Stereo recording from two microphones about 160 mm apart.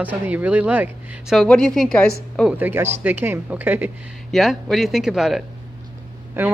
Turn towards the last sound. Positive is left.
turn(degrees=-15)  # may be behind; listen again after turning